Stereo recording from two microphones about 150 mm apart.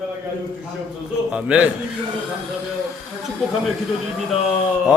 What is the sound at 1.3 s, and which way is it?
Speech, 5° right (ahead or behind).